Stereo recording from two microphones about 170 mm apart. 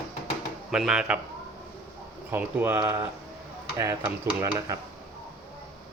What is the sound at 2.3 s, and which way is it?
Speech, 10° right (ahead or behind).